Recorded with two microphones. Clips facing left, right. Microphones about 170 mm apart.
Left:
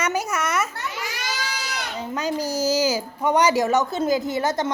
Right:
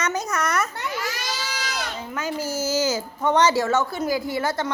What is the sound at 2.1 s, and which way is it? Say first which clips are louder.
Speech: left 3 dB; 15° left (ahead or behind).